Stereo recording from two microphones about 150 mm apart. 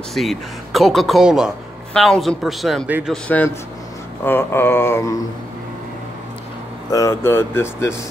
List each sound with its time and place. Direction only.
0.1 s speech: centre (ahead or behind)
3.1 s speech: 10° left (ahead or behind)
6.9 s speech: 20° left (ahead or behind)